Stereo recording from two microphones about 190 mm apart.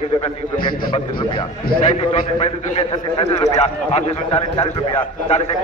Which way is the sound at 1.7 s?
30° left (ahead or behind).